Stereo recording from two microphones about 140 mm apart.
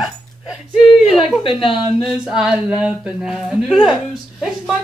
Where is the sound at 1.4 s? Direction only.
40° left (ahead or behind).